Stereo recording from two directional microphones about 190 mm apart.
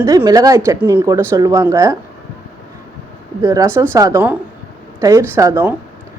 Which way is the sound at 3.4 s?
15° right (ahead or behind).